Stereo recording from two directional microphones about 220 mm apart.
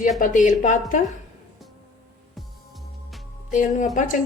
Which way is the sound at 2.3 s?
Centre (ahead or behind).